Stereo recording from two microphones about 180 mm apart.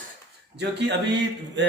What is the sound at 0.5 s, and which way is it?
Speech, 70° right (ahead or behind).